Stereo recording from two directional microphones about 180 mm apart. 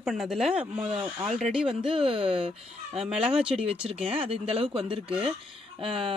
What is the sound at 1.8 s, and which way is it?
Speech, 30° right (ahead or behind).